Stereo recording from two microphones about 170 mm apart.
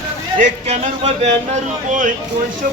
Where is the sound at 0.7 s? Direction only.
40° right (ahead or behind).